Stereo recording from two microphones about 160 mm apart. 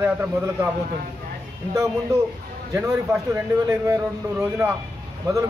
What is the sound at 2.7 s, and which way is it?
A man's voice, 15° right (ahead or behind).